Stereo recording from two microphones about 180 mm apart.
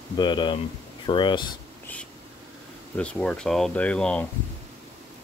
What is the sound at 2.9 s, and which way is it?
Speech, 5° left (ahead or behind).